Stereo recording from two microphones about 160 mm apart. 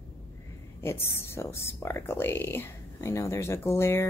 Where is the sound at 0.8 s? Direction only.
15° left (ahead or behind).